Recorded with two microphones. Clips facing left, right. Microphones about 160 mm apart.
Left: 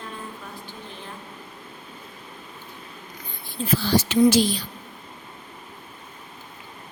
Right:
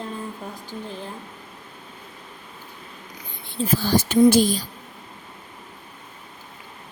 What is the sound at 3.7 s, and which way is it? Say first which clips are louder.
Speech: right 1 dB; 50° right (ahead or behind).